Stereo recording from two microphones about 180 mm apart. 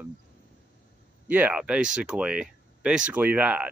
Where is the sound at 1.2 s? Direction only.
10° right (ahead or behind).